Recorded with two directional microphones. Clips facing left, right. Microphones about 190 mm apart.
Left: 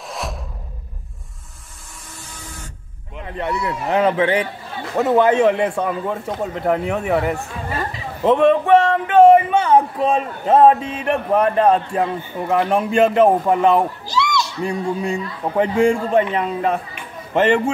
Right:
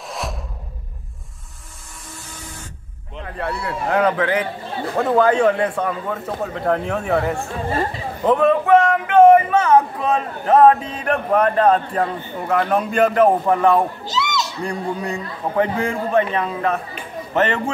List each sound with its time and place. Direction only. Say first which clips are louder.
0.1 s music: even; centre (ahead or behind)
3.2 s speech: left 2 dB; 20° left (ahead or behind)
8.2 s a sound: left 2 dB; 25° left (ahead or behind)
11.3 s a man's voice: even; 10° left (ahead or behind)
12.4 s speech: left 1 dB; 25° left (ahead or behind)
14.0 s a sound: left 2 dB; 20° right (ahead or behind)
14.6 s speech: left 4 dB; 25° left (ahead or behind)